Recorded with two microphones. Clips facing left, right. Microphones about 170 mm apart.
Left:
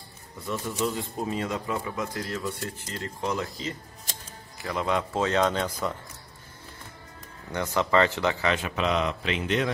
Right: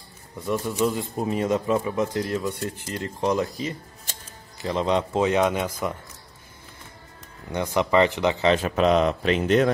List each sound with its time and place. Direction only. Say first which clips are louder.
0.5 s speech: right 5 dB; 15° right (ahead or behind)
7.5 s speech: right 3 dB; 15° right (ahead or behind)
8.5 s speech: right 7 dB; 40° right (ahead or behind)